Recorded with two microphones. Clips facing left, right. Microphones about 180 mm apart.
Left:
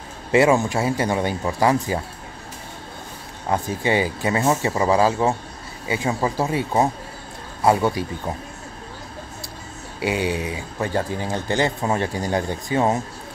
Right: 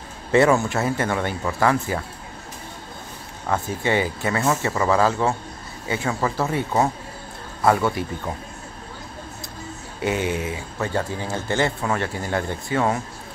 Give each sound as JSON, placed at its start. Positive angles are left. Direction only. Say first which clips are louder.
{"t": 0.3, "sound": "speech", "louder": "left 1 dB", "side_deg": 15}
{"t": 3.4, "sound": "speech", "louder": "left 1 dB", "side_deg": 15}
{"t": 10.0, "sound": "speech", "louder": "left 1 dB", "side_deg": 15}